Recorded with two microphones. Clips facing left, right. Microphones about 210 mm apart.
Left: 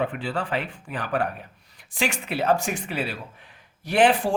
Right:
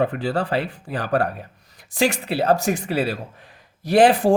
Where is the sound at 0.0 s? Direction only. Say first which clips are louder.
Right 5 dB; 40° right (ahead or behind).